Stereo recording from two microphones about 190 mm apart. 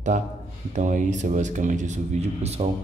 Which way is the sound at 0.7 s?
40° right (ahead or behind).